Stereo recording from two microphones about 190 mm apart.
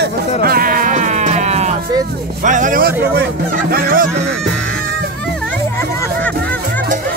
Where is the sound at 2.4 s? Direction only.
40° right (ahead or behind).